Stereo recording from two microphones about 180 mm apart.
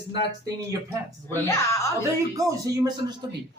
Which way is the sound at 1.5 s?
15° left (ahead or behind).